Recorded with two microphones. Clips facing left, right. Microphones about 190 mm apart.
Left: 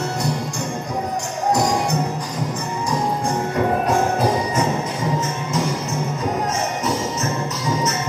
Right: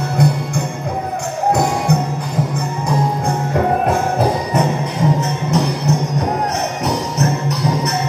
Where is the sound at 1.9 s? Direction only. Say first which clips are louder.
Right 5 dB; 60° right (ahead or behind).